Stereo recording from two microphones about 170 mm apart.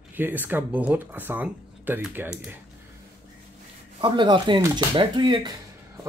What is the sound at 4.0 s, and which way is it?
Speech, 30° right (ahead or behind).